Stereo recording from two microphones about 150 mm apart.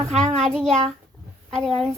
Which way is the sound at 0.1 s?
45° right (ahead or behind).